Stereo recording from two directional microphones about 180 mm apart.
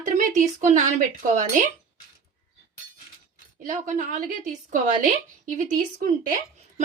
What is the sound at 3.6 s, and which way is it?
Speech, 45° right (ahead or behind).